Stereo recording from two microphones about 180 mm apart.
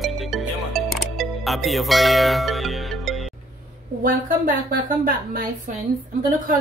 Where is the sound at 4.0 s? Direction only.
50° right (ahead or behind).